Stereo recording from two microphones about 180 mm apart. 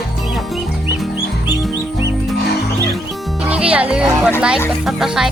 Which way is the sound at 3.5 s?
5° right (ahead or behind).